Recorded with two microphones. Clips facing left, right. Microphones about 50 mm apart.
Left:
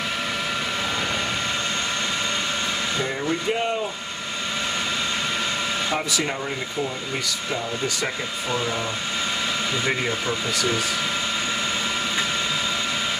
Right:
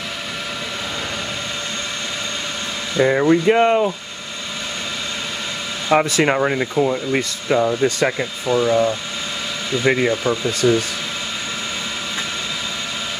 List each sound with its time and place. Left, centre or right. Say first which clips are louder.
3.0 s speech: right 10 dB; right
5.9 s speech: right 9 dB; right
8.0 s speech: right 7 dB; right
9.8 s speech: right 11 dB; right